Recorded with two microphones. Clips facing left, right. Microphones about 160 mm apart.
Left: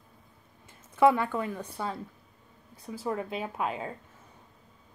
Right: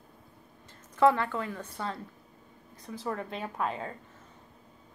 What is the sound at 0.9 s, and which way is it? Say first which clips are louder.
Speech: left 1 dB; 15° left (ahead or behind).